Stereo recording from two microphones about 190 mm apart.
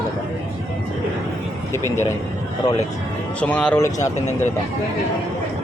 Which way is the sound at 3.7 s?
15° left (ahead or behind).